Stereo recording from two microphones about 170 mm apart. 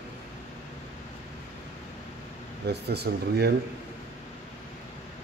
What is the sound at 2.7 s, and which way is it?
Speech, 75° right (ahead or behind).